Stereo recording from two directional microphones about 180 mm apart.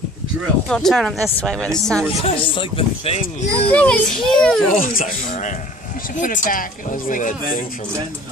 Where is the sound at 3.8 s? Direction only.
5° left (ahead or behind).